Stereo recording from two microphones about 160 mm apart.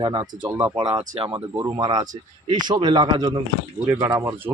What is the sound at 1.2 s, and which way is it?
Speech, 35° right (ahead or behind).